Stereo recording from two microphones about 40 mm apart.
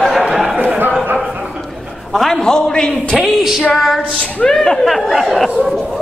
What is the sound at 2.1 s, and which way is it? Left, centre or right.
Speech, centre.